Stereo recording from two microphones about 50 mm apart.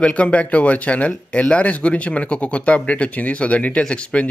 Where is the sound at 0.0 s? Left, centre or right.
Left.